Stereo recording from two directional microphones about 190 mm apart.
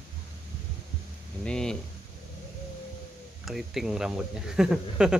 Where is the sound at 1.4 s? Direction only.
5° left (ahead or behind).